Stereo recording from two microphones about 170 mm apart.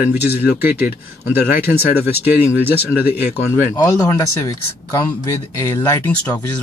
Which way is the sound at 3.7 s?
20° left (ahead or behind).